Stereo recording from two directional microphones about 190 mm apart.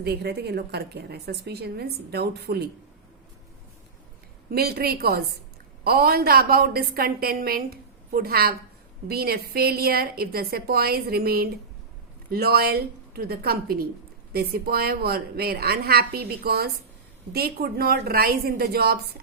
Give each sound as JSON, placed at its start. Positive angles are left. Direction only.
{"t": 0.0, "sound": "a woman's voice", "side_deg": -60}
{"t": 4.5, "sound": "a woman's voice", "side_deg": -55}